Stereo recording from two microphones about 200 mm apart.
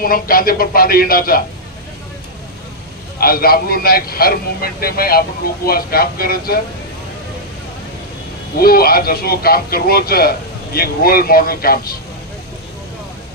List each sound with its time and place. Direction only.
0.0 s a man's voice: 45° left (ahead or behind)
3.2 s a man's voice: 50° left (ahead or behind)
8.5 s a man's voice: 50° left (ahead or behind)